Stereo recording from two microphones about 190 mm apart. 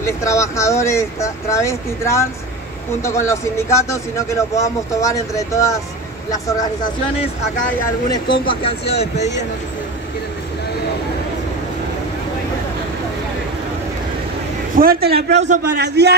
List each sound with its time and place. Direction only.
0.0 s speech: 15° left (ahead or behind)
8.1 s speech: 25° left (ahead or behind)
14.8 s a man's voice: 50° right (ahead or behind)
15.3 s a man's voice: 40° right (ahead or behind)
15.8 s a man's voice: 60° right (ahead or behind)